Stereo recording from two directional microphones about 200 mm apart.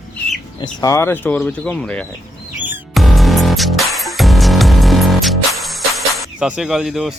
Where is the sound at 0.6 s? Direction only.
20° left (ahead or behind).